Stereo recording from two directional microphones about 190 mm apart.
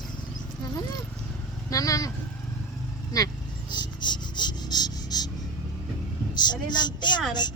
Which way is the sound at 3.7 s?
25° left (ahead or behind).